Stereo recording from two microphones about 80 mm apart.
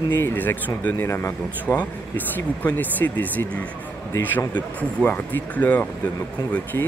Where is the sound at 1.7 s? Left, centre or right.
Centre.